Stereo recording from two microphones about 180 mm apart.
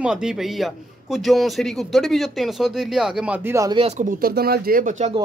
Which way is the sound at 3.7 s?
35° right (ahead or behind).